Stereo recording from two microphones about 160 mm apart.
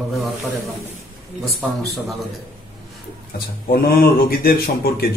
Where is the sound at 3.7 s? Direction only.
70° left (ahead or behind).